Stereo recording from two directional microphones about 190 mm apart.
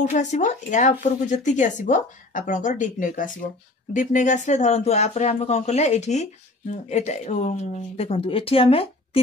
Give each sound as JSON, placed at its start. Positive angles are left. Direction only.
{"t": 0.0, "sound": "speech", "side_deg": 40}